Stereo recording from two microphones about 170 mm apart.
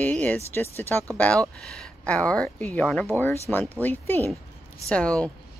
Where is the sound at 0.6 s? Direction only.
10° left (ahead or behind).